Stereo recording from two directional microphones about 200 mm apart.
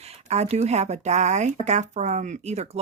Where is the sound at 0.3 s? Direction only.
35° right (ahead or behind).